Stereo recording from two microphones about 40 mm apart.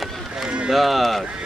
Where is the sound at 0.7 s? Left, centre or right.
Centre.